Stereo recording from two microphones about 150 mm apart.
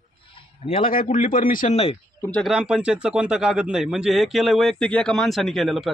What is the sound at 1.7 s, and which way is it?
Speech, 40° left (ahead or behind).